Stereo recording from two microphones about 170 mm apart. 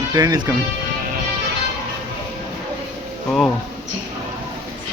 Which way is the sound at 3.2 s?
Centre (ahead or behind).